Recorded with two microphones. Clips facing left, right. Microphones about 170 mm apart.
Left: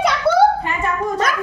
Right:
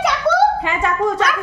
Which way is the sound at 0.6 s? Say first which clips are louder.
Right 3 dB; 90° right.